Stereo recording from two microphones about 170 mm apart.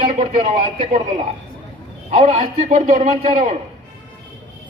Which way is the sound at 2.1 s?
40° right (ahead or behind).